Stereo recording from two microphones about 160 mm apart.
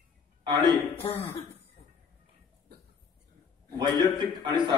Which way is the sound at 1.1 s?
35° left (ahead or behind).